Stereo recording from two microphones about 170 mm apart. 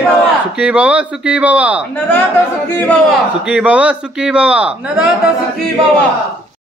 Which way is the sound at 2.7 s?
10° left (ahead or behind).